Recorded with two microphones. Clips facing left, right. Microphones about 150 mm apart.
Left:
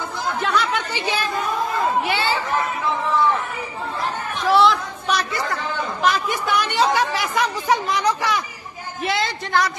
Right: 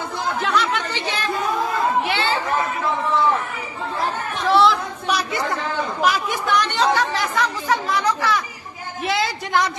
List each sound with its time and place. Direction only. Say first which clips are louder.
0.4 s chatter: even; centre (ahead or behind)
2.0 s chatter: even; centre (ahead or behind)
4.5 s chatter: even; centre (ahead or behind); by 8.4 s 15° left (ahead or behind)
9.0 s a woman's voice: right 1 dB; centre (ahead or behind)